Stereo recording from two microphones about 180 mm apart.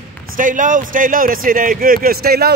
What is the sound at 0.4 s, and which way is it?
Speech, 45° right (ahead or behind).